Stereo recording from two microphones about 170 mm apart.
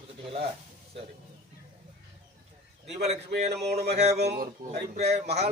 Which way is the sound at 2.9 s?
40° right (ahead or behind).